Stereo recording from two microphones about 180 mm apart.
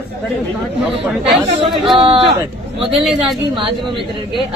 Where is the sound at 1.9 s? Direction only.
30° right (ahead or behind).